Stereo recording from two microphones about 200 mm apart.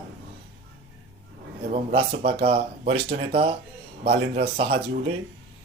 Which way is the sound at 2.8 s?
55° right (ahead or behind).